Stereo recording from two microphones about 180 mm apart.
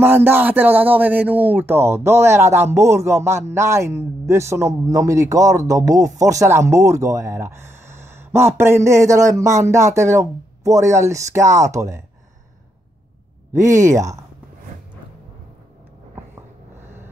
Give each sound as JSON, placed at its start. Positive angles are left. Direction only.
{"t": 0.0, "sound": "speech", "side_deg": -10}
{"t": 13.7, "sound": "speech", "side_deg": -15}